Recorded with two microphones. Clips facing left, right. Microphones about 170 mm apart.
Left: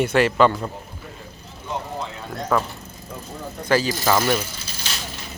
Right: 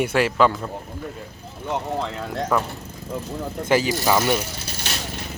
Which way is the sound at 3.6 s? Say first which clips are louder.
Even; 20° right (ahead or behind).